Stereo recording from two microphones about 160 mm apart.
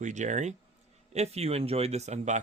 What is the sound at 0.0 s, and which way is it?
Speech, 50° right (ahead or behind).